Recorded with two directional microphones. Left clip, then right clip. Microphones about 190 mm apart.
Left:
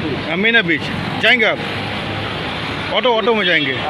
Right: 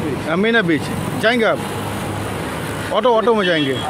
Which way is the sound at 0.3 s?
20° right (ahead or behind).